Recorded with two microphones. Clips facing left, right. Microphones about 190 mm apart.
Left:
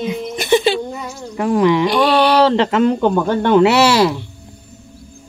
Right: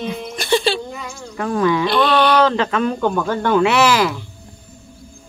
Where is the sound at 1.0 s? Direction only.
20° left (ahead or behind).